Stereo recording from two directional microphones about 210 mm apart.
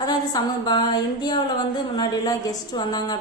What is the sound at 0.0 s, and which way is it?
A woman's voice, 20° left (ahead or behind).